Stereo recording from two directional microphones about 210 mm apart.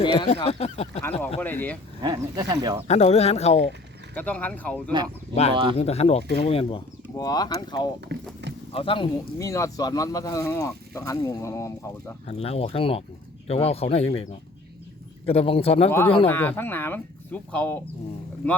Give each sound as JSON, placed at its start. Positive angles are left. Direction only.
{"t": 0.0, "sound": "speech", "side_deg": 20}
{"t": 1.4, "sound": "speech", "side_deg": 10}
{"t": 2.0, "sound": "speech", "side_deg": -20}
{"t": 2.8, "sound": "speech", "side_deg": 30}
{"t": 4.1, "sound": "speech", "side_deg": 5}
{"t": 5.3, "sound": "speech", "side_deg": 30}
{"t": 8.1, "sound": "speech", "side_deg": -55}
{"t": 8.7, "sound": "speech", "side_deg": 25}
{"t": 9.4, "sound": "speech", "side_deg": 15}
{"t": 12.2, "sound": "speech", "side_deg": 30}
{"t": 15.3, "sound": "speech", "side_deg": 25}
{"t": 15.9, "sound": "speech", "side_deg": 10}